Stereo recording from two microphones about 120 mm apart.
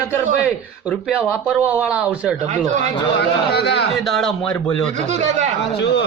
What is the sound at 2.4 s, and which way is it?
Speech, 85° right.